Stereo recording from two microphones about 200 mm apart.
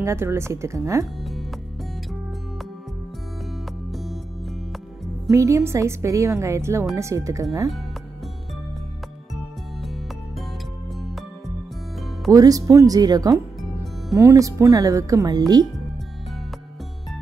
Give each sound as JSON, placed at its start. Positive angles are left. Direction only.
{"t": 0.0, "sound": "speech", "side_deg": -15}
{"t": 3.9, "sound": "music", "side_deg": 0}
{"t": 5.3, "sound": "speech", "side_deg": -15}
{"t": 11.0, "sound": "music", "side_deg": 0}
{"t": 12.3, "sound": "speech", "side_deg": -20}